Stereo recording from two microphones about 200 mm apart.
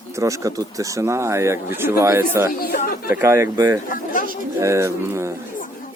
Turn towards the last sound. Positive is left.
turn(degrees=-15)  # may be behind; listen again after turning